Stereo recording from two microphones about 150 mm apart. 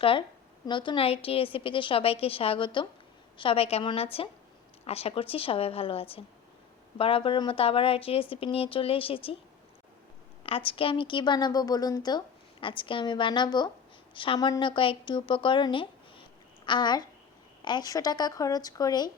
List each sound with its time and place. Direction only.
0.0 s a woman's voice: 35° left (ahead or behind)
10.4 s a woman's voice: 35° left (ahead or behind)